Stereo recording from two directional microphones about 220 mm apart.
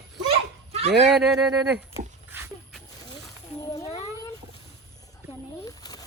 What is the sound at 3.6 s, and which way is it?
Cat, 15° left (ahead or behind).